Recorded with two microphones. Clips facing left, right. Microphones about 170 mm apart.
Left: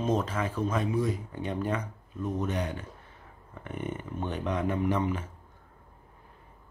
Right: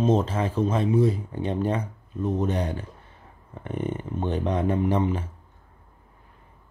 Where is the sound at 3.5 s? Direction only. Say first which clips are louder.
Right 6 dB; 30° right (ahead or behind).